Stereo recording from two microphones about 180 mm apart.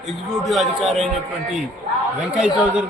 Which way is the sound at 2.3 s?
5° right (ahead or behind).